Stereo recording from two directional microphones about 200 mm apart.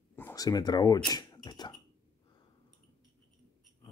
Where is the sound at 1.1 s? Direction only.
20° left (ahead or behind).